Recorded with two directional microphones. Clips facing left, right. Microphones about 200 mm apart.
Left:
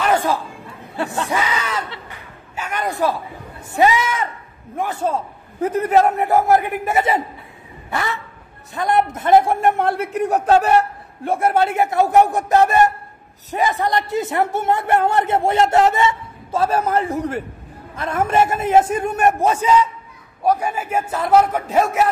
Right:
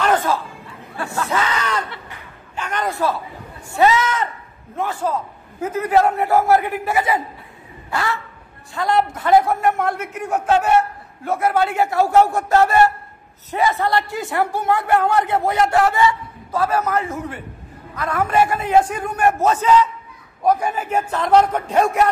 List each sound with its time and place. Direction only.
0.0 s chatter: 10° left (ahead or behind)
0.9 s a man's voice: 20° left (ahead or behind)
5.9 s a man's voice: 20° left (ahead or behind); by 17.4 s 35° left (ahead or behind)
17.9 s a man's voice: 25° left (ahead or behind); by 22.1 s 5° left (ahead or behind)